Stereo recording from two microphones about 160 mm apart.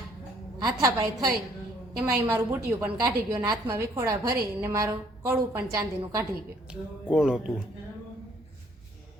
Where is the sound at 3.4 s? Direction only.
20° right (ahead or behind).